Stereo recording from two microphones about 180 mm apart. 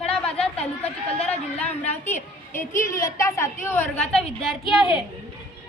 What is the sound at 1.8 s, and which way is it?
A woman's voice, 10° left (ahead or behind).